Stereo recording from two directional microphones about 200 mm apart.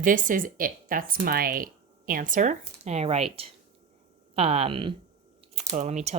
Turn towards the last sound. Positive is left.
turn(degrees=-35)  # may be behind; listen again after turning